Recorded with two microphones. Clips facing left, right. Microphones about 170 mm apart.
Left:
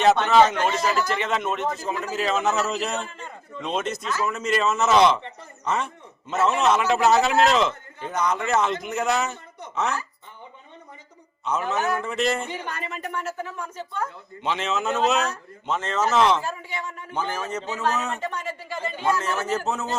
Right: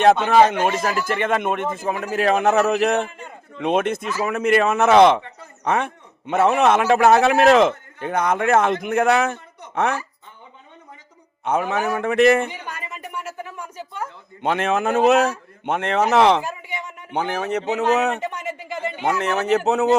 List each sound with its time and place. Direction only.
0.3 s a man's voice: 55° right (ahead or behind)
11.5 s a man's voice: 55° right (ahead or behind)
12.5 s a woman's voice: 10° right (ahead or behind)
14.4 s a man's voice: 55° right (ahead or behind)
16.4 s a woman's voice: 15° right (ahead or behind)
17.2 s a man's voice: 65° right (ahead or behind)
18.2 s speech: 20° right (ahead or behind)
19.2 s a man's voice: 65° right (ahead or behind)